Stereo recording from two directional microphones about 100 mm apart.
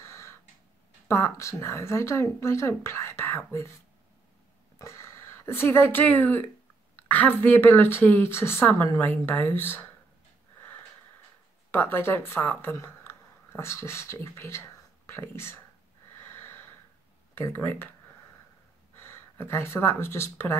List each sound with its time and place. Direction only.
1.0 s speech: 25° left (ahead or behind)
4.7 s speech: 30° left (ahead or behind)
11.7 s speech: 20° left (ahead or behind)
17.4 s speech: 20° left (ahead or behind)
19.3 s speech: 25° left (ahead or behind)